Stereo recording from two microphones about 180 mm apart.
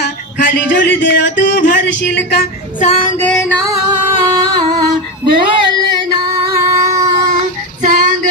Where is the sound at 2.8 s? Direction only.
45° left (ahead or behind).